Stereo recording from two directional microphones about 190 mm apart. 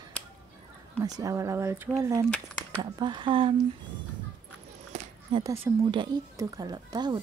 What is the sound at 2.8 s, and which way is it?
Speech, 25° right (ahead or behind).